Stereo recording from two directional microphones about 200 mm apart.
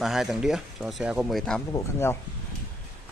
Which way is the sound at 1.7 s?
10° left (ahead or behind).